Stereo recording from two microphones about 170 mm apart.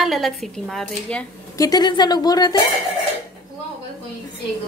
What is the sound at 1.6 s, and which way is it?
Speech, 25° left (ahead or behind).